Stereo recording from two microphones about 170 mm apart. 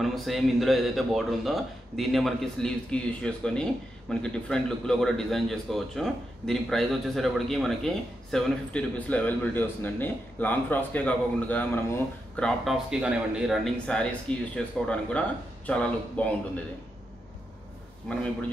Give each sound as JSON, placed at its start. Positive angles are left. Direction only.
{"t": 0.0, "sound": "a man's voice", "side_deg": 0}